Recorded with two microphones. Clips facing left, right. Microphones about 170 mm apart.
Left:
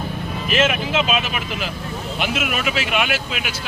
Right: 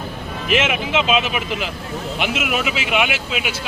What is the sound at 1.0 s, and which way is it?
Speech, 20° right (ahead or behind).